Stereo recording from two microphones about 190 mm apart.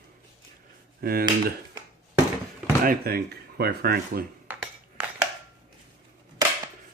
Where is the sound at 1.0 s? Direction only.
50° right (ahead or behind).